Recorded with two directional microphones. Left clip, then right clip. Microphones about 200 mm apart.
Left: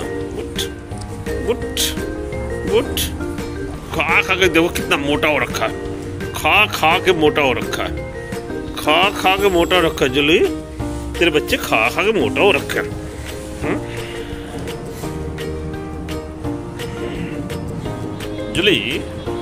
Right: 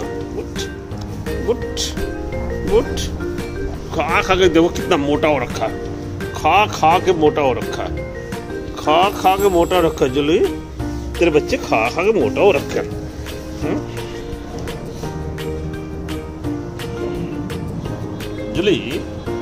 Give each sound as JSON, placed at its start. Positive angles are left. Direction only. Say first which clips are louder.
{"t": 1.5, "sound": "speech", "louder": "right 1 dB", "side_deg": -5}
{"t": 2.7, "sound": "speech", "louder": "right 1 dB", "side_deg": -10}
{"t": 18.5, "sound": "speech", "louder": "left 2 dB", "side_deg": -5}